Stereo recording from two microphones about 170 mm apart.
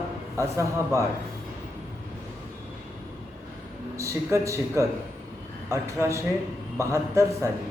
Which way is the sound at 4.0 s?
15° right (ahead or behind).